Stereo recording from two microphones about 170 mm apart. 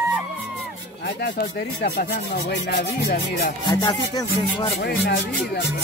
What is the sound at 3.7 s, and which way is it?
Speech, 20° left (ahead or behind).